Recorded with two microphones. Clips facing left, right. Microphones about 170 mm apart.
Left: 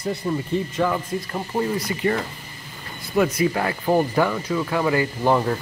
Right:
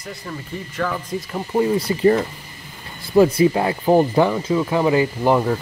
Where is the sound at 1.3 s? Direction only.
10° right (ahead or behind).